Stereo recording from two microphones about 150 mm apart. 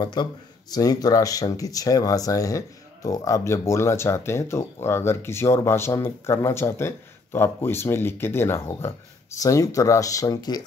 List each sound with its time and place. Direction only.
0.0 s speech: 30° left (ahead or behind)